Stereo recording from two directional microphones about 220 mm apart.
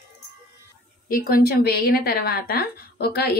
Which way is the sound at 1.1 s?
40° left (ahead or behind).